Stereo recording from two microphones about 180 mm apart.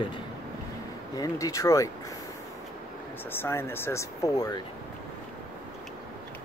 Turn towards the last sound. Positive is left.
turn(degrees=20)  # may be behind; listen again after turning